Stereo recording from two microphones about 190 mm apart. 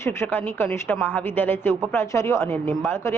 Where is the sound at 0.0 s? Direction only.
15° left (ahead or behind).